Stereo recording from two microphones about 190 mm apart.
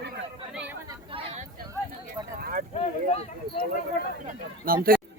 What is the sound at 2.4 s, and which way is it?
Clip-clop, 45° right (ahead or behind).